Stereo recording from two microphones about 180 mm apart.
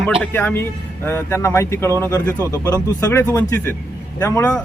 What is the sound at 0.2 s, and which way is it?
Speech, 10° left (ahead or behind).